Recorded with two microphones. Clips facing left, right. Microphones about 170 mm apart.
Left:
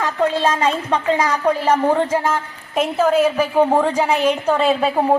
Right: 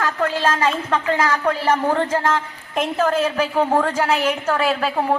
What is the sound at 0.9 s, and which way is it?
A man's voice, 15° left (ahead or behind).